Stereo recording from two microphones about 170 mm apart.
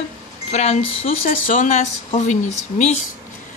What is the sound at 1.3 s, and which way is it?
A woman's voice, 50° left (ahead or behind).